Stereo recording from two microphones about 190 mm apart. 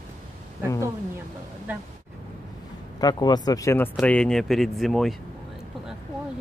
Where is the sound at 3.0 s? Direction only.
20° left (ahead or behind); by 5.1 s centre (ahead or behind).